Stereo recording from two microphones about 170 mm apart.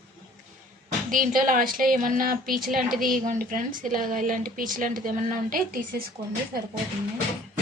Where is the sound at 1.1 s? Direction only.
55° right (ahead or behind).